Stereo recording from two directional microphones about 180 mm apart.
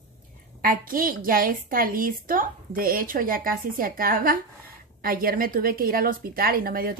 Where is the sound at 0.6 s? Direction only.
55° right (ahead or behind).